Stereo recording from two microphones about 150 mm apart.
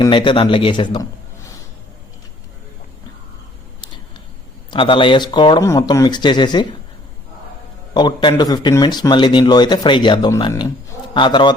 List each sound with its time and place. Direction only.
0.0 s speech: 35° left (ahead or behind)
4.7 s speech: 35° left (ahead or behind)
7.9 s speech: 30° left (ahead or behind)